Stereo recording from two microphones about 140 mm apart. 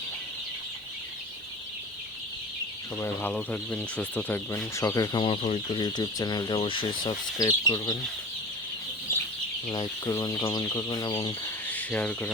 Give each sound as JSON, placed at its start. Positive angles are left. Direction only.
{"t": 3.0, "sound": "speech", "side_deg": 15}
{"t": 5.2, "sound": "speech", "side_deg": 40}
{"t": 5.8, "sound": "chicken", "side_deg": 30}
{"t": 6.6, "sound": "speech", "side_deg": 35}
{"t": 9.7, "sound": "chicken", "side_deg": 25}
{"t": 11.4, "sound": "speech", "side_deg": 10}